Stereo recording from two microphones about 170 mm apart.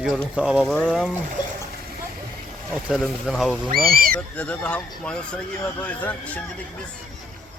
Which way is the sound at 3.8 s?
60° right (ahead or behind).